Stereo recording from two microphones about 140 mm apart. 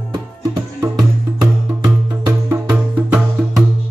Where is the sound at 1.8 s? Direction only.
30° right (ahead or behind).